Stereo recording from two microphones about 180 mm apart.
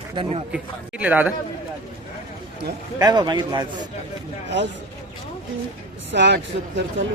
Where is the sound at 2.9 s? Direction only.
20° right (ahead or behind).